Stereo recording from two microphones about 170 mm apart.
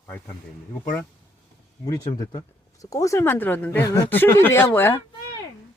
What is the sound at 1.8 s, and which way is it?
Speech, 20° left (ahead or behind).